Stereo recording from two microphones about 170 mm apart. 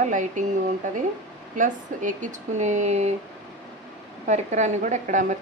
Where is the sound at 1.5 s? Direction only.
50° right (ahead or behind).